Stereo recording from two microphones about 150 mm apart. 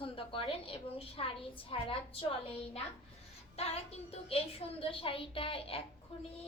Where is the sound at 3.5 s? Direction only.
45° left (ahead or behind).